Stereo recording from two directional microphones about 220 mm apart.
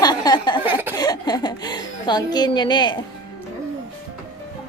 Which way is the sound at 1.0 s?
20° left (ahead or behind).